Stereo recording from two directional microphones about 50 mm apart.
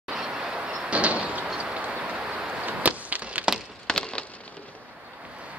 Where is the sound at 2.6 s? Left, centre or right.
Right.